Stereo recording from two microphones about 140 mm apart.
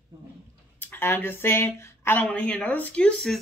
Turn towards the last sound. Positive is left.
turn(degrees=5)  # may be behind; listen again after turning